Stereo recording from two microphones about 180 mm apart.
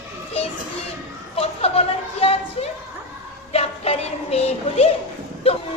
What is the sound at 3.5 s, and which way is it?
Music, 35° left (ahead or behind).